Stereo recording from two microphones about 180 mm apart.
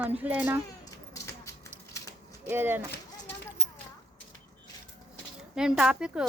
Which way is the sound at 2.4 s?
10° right (ahead or behind).